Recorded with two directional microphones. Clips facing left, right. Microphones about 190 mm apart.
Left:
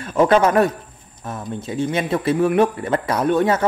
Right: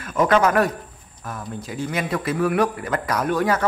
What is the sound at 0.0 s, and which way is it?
A man's voice, 25° left (ahead or behind).